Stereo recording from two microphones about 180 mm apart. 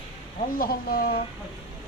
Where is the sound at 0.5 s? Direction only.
55° left (ahead or behind).